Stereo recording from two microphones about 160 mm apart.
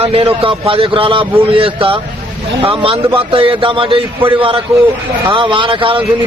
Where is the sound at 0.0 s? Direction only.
35° right (ahead or behind).